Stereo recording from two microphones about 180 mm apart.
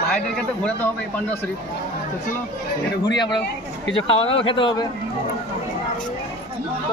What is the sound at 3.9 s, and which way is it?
Speech, 30° left (ahead or behind).